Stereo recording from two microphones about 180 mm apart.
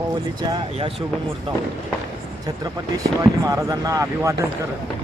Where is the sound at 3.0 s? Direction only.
20° right (ahead or behind).